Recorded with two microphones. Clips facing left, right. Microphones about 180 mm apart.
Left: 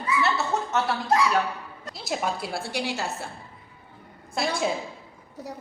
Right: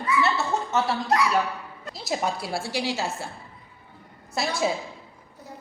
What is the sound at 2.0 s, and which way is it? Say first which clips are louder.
Speech: right 1 dB; centre (ahead or behind).